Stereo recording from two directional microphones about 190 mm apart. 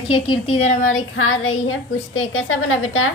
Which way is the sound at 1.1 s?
90° left.